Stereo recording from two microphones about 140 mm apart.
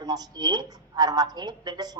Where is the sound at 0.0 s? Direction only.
30° right (ahead or behind).